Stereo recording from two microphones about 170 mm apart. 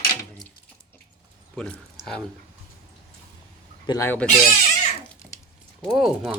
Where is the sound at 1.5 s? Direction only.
5° left (ahead or behind).